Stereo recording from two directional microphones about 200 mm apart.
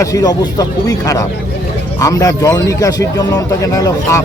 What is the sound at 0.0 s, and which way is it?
Speech, 15° left (ahead or behind).